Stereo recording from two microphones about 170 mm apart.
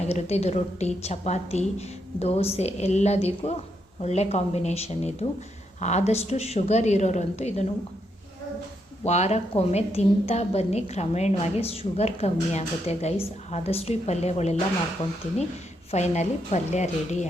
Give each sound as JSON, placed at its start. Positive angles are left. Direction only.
{"t": 0.0, "sound": "a woman's voice", "side_deg": 40}
{"t": 9.0, "sound": "a woman's voice", "side_deg": 40}
{"t": 15.9, "sound": "a woman's voice", "side_deg": 40}